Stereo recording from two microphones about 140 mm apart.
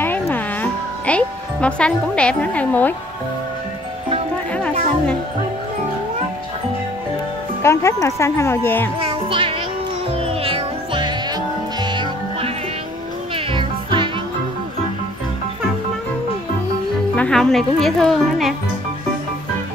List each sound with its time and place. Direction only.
0.0 s music: 15° left (ahead or behind)
7.6 s speech: 20° left (ahead or behind)
9.0 s music: 40° right (ahead or behind)
13.5 s music: 35° right (ahead or behind)
17.1 s speech: 5° left (ahead or behind)